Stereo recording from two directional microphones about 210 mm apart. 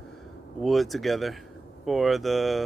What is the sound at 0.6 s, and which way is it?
Speech, centre (ahead or behind).